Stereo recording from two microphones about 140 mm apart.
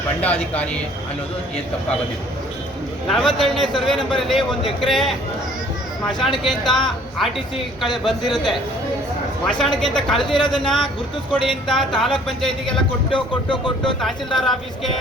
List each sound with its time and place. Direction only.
0.2 s speech: 10° left (ahead or behind)
3.1 s a man's voice: 5° left (ahead or behind)
6.3 s a man's voice: centre (ahead or behind)
10.2 s speech: 35° left (ahead or behind)
10.5 s a man's voice: 5° left (ahead or behind)
13.8 s a man's voice: centre (ahead or behind)